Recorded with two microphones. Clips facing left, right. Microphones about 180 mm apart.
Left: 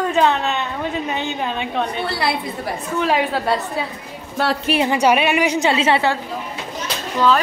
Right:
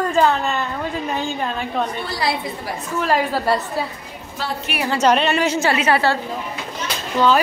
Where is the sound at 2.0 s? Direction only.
65° left (ahead or behind).